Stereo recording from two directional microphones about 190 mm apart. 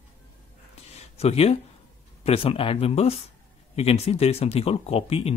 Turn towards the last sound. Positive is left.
turn(degrees=30)  # may be behind; listen again after turning